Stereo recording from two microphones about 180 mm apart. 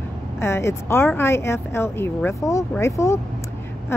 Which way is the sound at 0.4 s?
15° left (ahead or behind).